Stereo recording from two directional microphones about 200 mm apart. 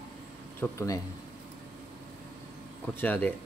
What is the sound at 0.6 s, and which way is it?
Speech, 15° left (ahead or behind).